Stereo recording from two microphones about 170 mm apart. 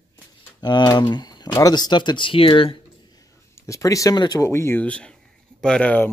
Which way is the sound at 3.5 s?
20° left (ahead or behind).